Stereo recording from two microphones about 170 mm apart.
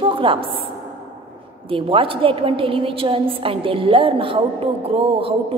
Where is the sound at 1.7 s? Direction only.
30° right (ahead or behind).